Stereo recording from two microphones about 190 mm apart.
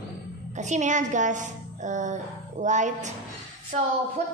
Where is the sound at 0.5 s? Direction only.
40° right (ahead or behind).